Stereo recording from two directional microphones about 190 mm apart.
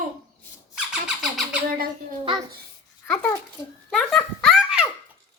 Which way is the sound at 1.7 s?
50° right (ahead or behind).